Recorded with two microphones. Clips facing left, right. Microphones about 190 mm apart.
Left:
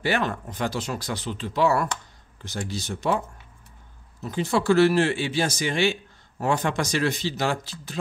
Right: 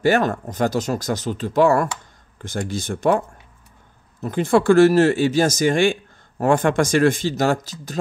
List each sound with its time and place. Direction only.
0.0 s speech: 45° right (ahead or behind)